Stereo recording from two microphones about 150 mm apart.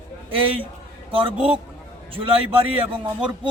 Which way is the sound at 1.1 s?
35° right (ahead or behind).